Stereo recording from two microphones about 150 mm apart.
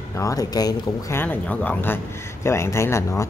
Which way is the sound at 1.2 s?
10° left (ahead or behind).